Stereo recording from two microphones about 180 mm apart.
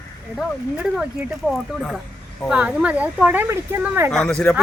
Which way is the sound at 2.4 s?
5° right (ahead or behind).